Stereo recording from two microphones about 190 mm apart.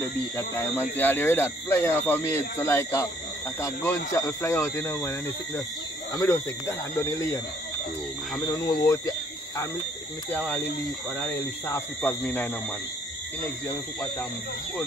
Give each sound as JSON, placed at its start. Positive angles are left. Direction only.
{"t": 0.4, "sound": "speech", "side_deg": 15}
{"t": 6.1, "sound": "speech", "side_deg": 15}
{"t": 8.5, "sound": "speech", "side_deg": 15}
{"t": 11.1, "sound": "speech", "side_deg": 10}